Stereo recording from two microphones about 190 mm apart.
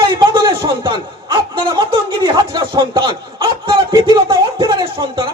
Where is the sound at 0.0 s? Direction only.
25° right (ahead or behind).